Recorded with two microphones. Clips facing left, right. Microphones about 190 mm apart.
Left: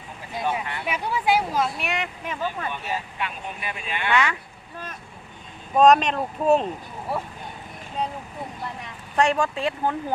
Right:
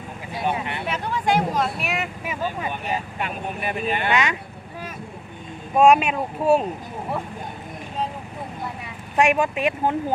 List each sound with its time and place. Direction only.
0.4 s a sound: 20° right (ahead or behind)
0.9 s vehicle: 10° left (ahead or behind); by 2.9 s 15° right (ahead or behind)
3.2 s speech: 45° right (ahead or behind)
4.1 s speech: 20° right (ahead or behind)
5.7 s speech: 10° right (ahead or behind)
9.1 s speech: 15° right (ahead or behind)